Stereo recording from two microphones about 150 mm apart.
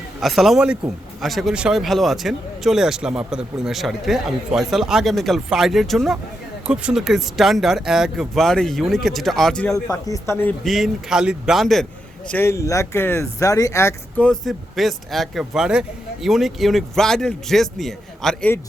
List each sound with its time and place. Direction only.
0.2 s speech: centre (ahead or behind)
9.9 s speech: 20° left (ahead or behind)
10.6 s speech: centre (ahead or behind)
12.3 s speech: 15° left (ahead or behind)
14.2 s speech: 5° left (ahead or behind)